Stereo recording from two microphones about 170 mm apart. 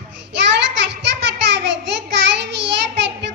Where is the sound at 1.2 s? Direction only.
90° right.